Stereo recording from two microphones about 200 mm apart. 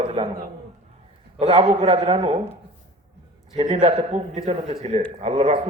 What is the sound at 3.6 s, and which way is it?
A man's voice, 30° right (ahead or behind).